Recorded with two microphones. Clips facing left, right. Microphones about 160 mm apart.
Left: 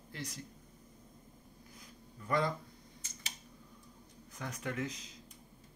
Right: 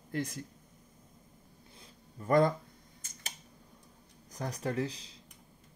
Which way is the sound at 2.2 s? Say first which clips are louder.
Right 8 dB; 45° right (ahead or behind).